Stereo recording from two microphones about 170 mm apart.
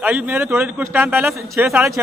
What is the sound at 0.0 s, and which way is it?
A man's voice, 10° right (ahead or behind).